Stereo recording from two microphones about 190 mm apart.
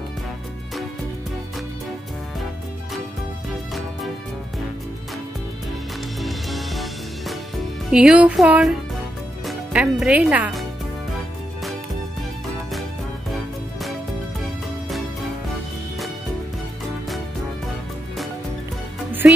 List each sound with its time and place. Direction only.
3.4 s music: centre (ahead or behind)
6.2 s music: centre (ahead or behind)
9.5 s speech: 5° right (ahead or behind)
19.2 s music: 10° right (ahead or behind)